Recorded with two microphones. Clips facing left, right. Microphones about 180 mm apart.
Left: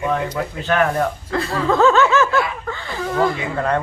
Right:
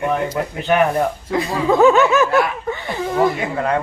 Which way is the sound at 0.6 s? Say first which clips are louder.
Right 2 dB; 15° right (ahead or behind).